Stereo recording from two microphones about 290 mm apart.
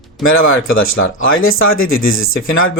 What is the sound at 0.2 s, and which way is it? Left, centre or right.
Speech, left.